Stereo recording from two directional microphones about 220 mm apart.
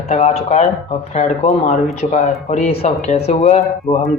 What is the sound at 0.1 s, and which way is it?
Speech, 30° left (ahead or behind).